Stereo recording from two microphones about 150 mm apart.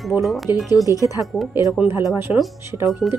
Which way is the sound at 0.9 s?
20° left (ahead or behind).